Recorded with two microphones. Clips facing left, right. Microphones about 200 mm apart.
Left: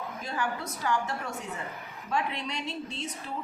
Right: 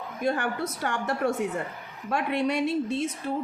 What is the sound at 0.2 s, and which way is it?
Speech, 55° right (ahead or behind).